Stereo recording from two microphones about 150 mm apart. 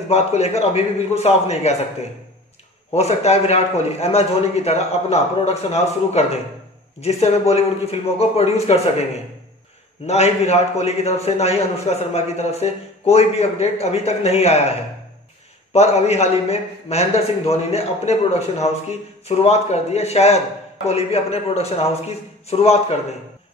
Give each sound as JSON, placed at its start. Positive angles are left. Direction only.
{"t": 0.1, "sound": "a man's voice", "side_deg": 45}
{"t": 2.9, "sound": "a man's voice", "side_deg": 45}
{"t": 10.0, "sound": "a man's voice", "side_deg": 45}
{"t": 15.7, "sound": "a man's voice", "side_deg": 45}